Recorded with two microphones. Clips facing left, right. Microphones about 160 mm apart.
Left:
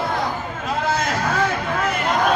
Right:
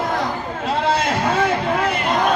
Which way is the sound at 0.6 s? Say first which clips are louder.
Right 3 dB; 30° right (ahead or behind).